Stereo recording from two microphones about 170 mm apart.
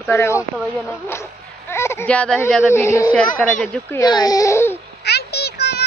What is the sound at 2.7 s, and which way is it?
Speech, 15° left (ahead or behind).